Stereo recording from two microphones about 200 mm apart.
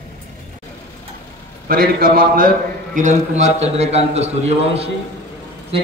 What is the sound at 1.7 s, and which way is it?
A man's voice, 45° right (ahead or behind).